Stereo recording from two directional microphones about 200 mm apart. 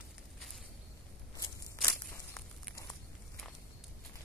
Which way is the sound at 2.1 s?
15° left (ahead or behind).